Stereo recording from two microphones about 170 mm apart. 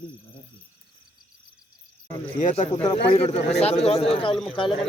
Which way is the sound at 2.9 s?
35° left (ahead or behind).